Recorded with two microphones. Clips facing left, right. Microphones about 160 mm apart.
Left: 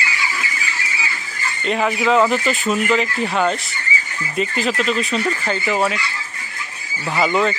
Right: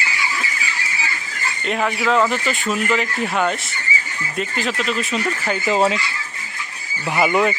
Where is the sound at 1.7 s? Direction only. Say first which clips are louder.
Left 2 dB; centre (ahead or behind).